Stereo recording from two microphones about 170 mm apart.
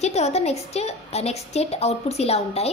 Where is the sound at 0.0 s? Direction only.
40° left (ahead or behind).